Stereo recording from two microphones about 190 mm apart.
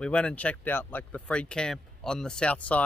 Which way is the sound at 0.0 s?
5° left (ahead or behind).